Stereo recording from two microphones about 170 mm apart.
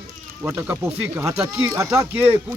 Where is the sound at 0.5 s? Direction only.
15° right (ahead or behind).